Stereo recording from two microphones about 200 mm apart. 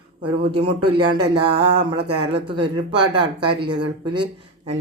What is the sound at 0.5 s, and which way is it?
Speech, 25° right (ahead or behind).